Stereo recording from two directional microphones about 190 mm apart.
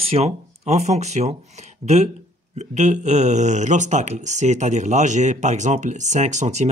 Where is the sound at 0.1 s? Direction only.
35° right (ahead or behind).